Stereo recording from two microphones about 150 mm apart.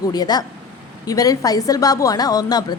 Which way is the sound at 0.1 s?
25° left (ahead or behind).